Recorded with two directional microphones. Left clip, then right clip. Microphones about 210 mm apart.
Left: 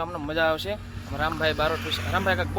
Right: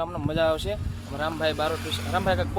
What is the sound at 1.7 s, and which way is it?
Speech, 35° right (ahead or behind).